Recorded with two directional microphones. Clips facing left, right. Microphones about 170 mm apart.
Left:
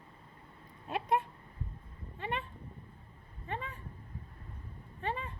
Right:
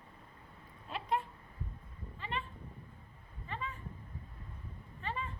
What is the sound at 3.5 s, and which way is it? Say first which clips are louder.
Cat: left 2 dB; 55° left (ahead or behind).